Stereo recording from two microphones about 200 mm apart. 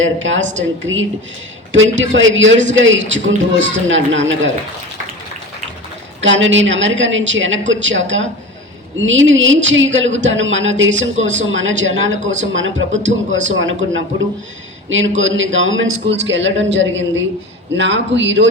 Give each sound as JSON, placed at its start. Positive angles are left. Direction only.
{"t": 0.0, "sound": "speech", "side_deg": -70}
{"t": 6.2, "sound": "a man's voice", "side_deg": -70}